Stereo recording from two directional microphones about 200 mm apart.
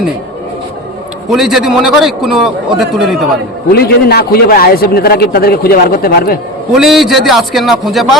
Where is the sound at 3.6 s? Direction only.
50° left (ahead or behind).